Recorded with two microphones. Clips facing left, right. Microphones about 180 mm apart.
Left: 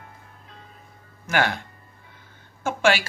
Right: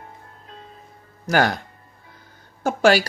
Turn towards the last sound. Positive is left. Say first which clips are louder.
# right 5 dB
turn(degrees=-40)  # may be behind; listen again after turning